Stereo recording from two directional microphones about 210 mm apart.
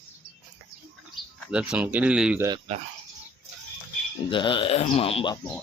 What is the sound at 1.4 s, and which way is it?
Speech, 5° right (ahead or behind).